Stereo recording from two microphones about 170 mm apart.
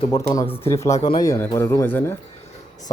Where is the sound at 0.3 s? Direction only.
15° left (ahead or behind).